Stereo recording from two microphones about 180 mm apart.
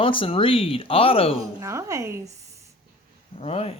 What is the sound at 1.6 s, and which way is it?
A woman's voice, 15° right (ahead or behind).